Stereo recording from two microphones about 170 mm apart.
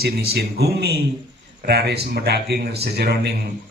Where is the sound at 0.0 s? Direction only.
70° right (ahead or behind).